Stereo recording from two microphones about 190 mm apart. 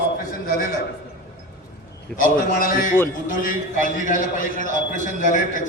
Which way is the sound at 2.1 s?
45° left (ahead or behind).